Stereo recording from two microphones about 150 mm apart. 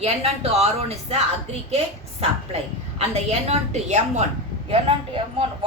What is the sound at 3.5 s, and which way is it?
A woman's voice, 50° right (ahead or behind).